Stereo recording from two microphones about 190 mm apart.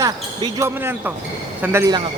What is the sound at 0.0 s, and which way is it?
Speech, 15° right (ahead or behind).